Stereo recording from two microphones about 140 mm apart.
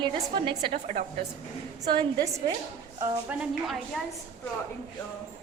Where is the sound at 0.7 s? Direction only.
65° right (ahead or behind).